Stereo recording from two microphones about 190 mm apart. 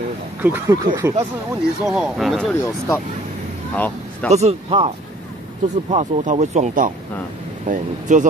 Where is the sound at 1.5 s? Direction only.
Centre (ahead or behind).